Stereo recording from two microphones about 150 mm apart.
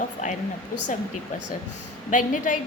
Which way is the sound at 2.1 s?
60° left (ahead or behind).